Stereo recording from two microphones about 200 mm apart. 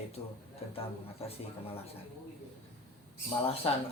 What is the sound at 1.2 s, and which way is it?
Speech, 30° left (ahead or behind).